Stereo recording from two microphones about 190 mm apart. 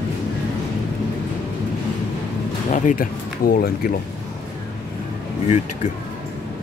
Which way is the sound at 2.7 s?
45° left (ahead or behind).